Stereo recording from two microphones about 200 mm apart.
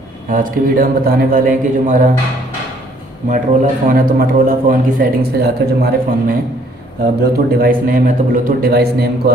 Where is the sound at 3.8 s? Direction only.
45° right (ahead or behind).